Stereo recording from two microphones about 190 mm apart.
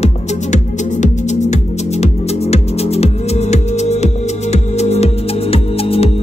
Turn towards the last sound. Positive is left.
turn(degrees=30)  # may be behind; listen again after turning